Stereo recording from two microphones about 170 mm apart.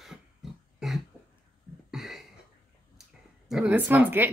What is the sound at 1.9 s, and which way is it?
Cough, centre (ahead or behind).